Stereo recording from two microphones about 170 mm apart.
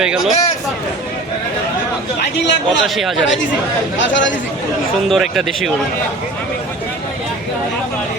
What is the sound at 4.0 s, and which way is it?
Speech, 90° left.